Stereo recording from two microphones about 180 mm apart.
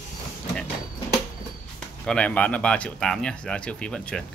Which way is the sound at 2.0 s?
5° left (ahead or behind).